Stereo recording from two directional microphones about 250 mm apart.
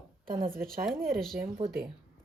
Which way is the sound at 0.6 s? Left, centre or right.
Centre.